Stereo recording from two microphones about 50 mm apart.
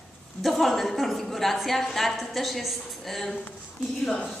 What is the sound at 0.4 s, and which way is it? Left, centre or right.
A woman's voice, centre.